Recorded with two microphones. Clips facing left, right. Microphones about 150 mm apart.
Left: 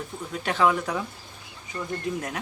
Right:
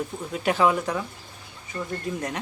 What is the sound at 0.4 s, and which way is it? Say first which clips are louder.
Speech: right 2 dB; 10° right (ahead or behind).